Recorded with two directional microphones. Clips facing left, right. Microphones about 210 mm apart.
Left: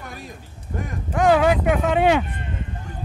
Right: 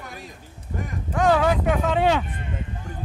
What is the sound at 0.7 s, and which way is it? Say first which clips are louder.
Speech: left 2 dB; 50° left (ahead or behind).